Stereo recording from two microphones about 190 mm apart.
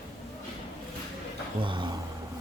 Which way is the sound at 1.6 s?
25° right (ahead or behind).